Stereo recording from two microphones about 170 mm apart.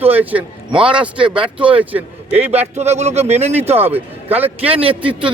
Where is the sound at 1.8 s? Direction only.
10° right (ahead or behind).